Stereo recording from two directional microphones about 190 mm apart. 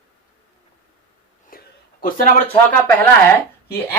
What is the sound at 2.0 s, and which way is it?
Speech, 50° left (ahead or behind).